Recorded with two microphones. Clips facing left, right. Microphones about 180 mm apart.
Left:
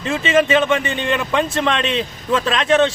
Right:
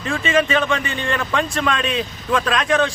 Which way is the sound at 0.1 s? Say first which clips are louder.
Left 3 dB; 20° left (ahead or behind).